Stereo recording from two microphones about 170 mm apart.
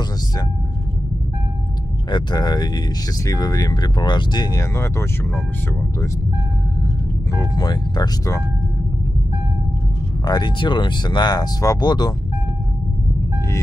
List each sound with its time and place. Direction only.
2.0 s speech: 25° left (ahead or behind)
7.3 s speech: 25° left (ahead or behind)
10.2 s speech: 25° left (ahead or behind)